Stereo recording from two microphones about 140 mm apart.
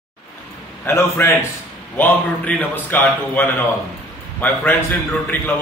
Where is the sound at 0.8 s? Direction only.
20° left (ahead or behind).